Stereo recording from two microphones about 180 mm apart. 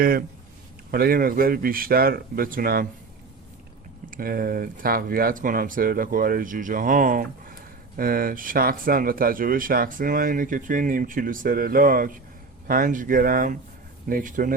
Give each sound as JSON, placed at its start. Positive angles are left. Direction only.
{"t": 0.0, "sound": "speech", "side_deg": -55}
{"t": 4.1, "sound": "speech", "side_deg": -55}